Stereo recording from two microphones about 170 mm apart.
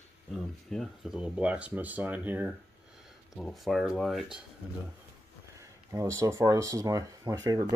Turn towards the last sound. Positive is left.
turn(degrees=-20)  # may be behind; listen again after turning